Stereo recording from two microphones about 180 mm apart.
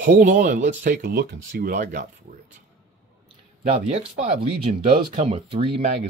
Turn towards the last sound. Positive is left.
turn(degrees=-35)  # may be behind; listen again after turning